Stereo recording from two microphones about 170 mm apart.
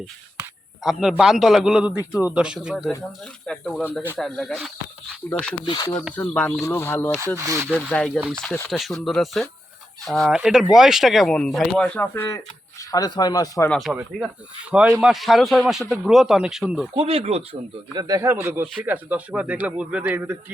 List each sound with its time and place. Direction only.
0.9 s speech: centre (ahead or behind)
5.6 s speech: 25° left (ahead or behind)
6.1 s speech: 10° left (ahead or behind)
7.3 s speech: 15° right (ahead or behind)
7.9 s speech: 5° left (ahead or behind)
12.9 s speech: 25° left (ahead or behind)
13.7 s speech: centre (ahead or behind)
16.9 s speech: 35° right (ahead or behind)
17.9 s speech: 20° right (ahead or behind)